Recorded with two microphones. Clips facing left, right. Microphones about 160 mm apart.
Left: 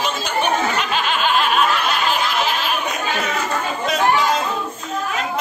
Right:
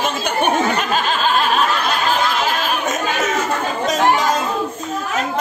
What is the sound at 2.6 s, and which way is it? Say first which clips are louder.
Chatter: right 3 dB; 45° right (ahead or behind).